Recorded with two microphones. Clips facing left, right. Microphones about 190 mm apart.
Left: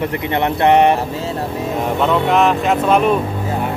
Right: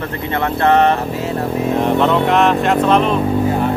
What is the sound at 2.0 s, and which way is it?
Speech, centre (ahead or behind).